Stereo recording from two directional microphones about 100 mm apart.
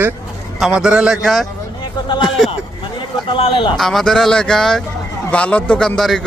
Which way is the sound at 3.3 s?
60° left (ahead or behind).